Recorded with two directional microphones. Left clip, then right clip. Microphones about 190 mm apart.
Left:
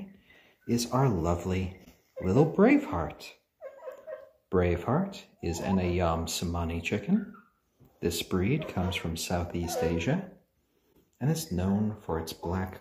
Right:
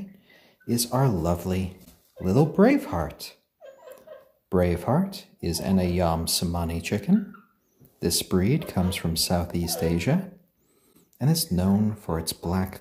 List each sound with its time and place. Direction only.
0.8 s speech: 20° right (ahead or behind)
4.5 s speech: 30° right (ahead or behind)